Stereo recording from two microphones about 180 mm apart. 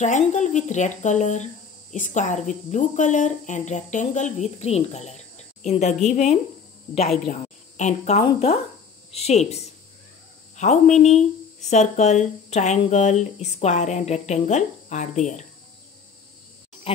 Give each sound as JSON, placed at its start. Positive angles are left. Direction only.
{"t": 0.0, "sound": "a woman's voice", "side_deg": 40}
{"t": 16.9, "sound": "speech", "side_deg": 30}